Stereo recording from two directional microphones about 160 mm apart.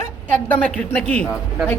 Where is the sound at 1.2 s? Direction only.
5° right (ahead or behind).